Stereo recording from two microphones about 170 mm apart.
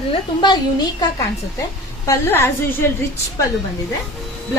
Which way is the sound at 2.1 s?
15° left (ahead or behind).